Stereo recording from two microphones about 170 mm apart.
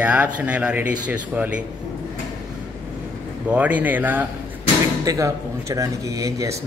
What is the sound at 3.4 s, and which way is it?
Speech, 10° right (ahead or behind).